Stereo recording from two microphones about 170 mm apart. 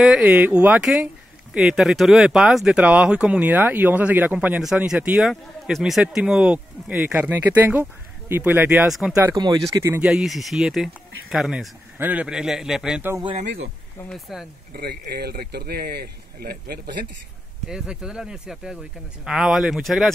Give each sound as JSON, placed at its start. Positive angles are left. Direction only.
{"t": 0.0, "sound": "speech", "side_deg": -5}
{"t": 9.1, "sound": "speech", "side_deg": -20}
{"t": 10.0, "sound": "speech", "side_deg": 0}
{"t": 14.7, "sound": "speech", "side_deg": -70}
{"t": 17.6, "sound": "speech", "side_deg": -5}